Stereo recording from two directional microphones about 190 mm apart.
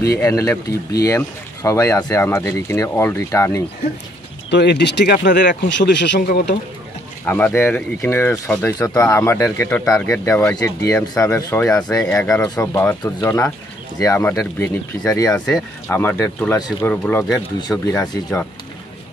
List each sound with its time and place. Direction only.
0.2 s speech: 15° left (ahead or behind)
4.5 s speech: 65° left (ahead or behind)
7.2 s speech: 10° left (ahead or behind)
18.0 s speech: 20° left (ahead or behind)